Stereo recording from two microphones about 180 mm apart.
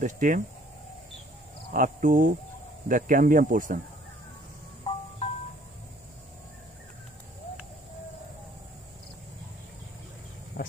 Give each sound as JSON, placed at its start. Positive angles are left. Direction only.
{"t": 0.0, "sound": "speech", "side_deg": -45}
{"t": 1.7, "sound": "speech", "side_deg": -45}
{"t": 4.9, "sound": "music", "side_deg": 30}
{"t": 10.6, "sound": "speech", "side_deg": 45}